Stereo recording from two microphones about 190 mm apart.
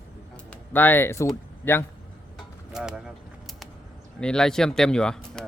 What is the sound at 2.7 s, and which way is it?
Speech, 5° right (ahead or behind).